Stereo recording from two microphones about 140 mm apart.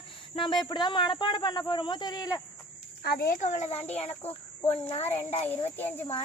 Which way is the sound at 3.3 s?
60° left (ahead or behind).